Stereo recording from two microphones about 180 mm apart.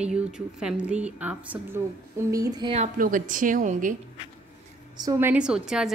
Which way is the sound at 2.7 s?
45° right (ahead or behind).